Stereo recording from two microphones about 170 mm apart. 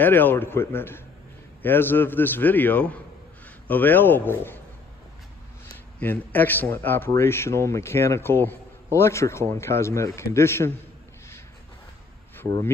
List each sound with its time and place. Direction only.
0.0 s speech: 10° left (ahead or behind)
5.9 s speech: 10° left (ahead or behind)
12.4 s speech: 15° left (ahead or behind)